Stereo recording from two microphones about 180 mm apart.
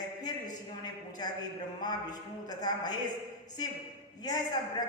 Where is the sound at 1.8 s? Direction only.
20° left (ahead or behind).